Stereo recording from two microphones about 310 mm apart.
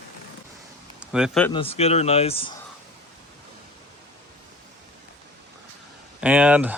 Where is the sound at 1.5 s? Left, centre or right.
Centre.